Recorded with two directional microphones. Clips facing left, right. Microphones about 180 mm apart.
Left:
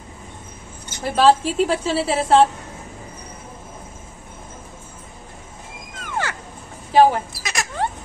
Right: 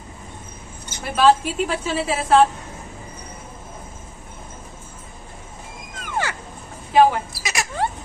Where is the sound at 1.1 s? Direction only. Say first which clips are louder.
Left 1 dB; 35° left (ahead or behind).